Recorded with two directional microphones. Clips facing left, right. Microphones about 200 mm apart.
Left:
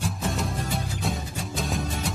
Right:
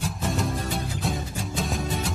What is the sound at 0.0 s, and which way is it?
Music, centre (ahead or behind).